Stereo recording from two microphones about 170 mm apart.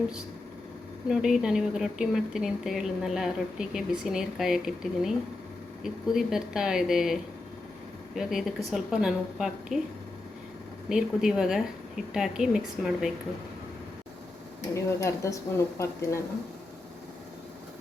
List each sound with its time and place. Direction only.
1.0 s a woman's voice: 5° right (ahead or behind)
10.8 s a woman's voice: 5° right (ahead or behind)
14.7 s speech: 15° left (ahead or behind)